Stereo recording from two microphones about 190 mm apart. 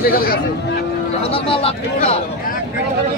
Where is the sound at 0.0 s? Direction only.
50° left (ahead or behind).